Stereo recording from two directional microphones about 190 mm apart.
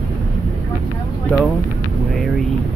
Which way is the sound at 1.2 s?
5° left (ahead or behind).